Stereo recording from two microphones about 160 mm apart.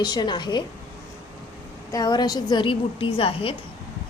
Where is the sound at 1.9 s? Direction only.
25° left (ahead or behind).